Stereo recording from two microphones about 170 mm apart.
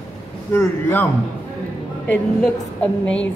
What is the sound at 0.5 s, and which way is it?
Speech, 15° left (ahead or behind).